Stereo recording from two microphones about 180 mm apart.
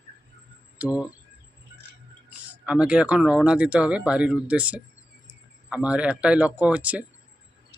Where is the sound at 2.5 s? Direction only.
5° right (ahead or behind).